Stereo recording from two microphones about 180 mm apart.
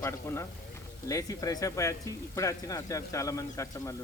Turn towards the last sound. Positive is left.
turn(degrees=15)  # may be behind; listen again after turning